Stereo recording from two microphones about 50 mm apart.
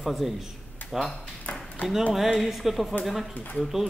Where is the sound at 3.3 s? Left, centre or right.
Left.